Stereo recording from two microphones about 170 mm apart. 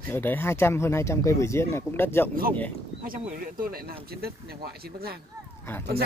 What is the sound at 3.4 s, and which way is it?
Speech, 60° right (ahead or behind).